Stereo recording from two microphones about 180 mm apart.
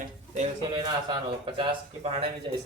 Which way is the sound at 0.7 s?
25° right (ahead or behind).